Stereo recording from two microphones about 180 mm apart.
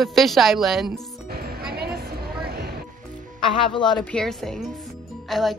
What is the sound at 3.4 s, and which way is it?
Speech, 30° left (ahead or behind).